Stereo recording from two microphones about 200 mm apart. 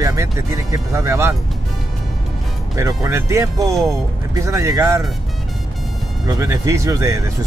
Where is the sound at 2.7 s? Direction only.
15° right (ahead or behind).